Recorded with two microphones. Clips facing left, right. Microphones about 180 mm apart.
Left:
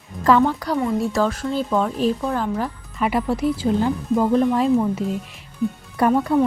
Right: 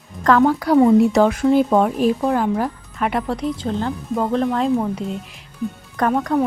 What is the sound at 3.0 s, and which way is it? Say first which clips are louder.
Speech: left 1 dB; 5° left (ahead or behind).